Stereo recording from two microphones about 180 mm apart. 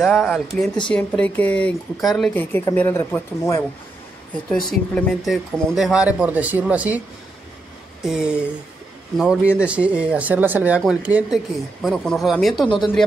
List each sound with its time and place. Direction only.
0.0 s speech: centre (ahead or behind)
4.6 s speech: centre (ahead or behind)
8.0 s speech: 5° right (ahead or behind)